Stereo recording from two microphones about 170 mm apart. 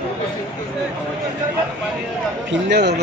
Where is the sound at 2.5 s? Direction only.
85° right.